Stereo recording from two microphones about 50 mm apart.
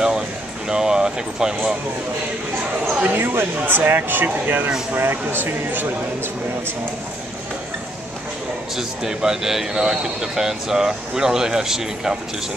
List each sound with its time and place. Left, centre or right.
0.7 s speech: centre
2.9 s speech: right
8.7 s speech: centre